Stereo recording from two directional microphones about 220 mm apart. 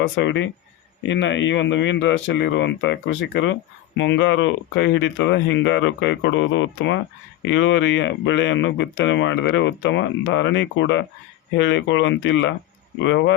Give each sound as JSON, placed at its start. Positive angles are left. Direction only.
{"t": 0.0, "sound": "speech", "side_deg": 55}